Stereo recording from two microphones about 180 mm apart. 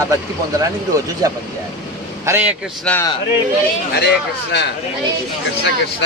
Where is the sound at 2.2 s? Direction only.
10° right (ahead or behind).